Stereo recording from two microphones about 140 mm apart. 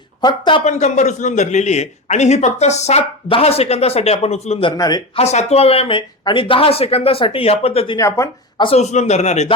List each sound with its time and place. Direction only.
0.2 s speech: 35° left (ahead or behind)
0.6 s a man's voice: 55° left (ahead or behind)
4.8 s speech: 30° left (ahead or behind)
5.1 s a man's voice: 50° left (ahead or behind)
8.8 s a man's voice: 55° left (ahead or behind)